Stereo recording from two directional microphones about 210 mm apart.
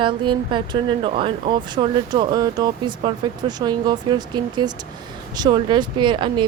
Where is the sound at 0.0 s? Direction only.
25° right (ahead or behind).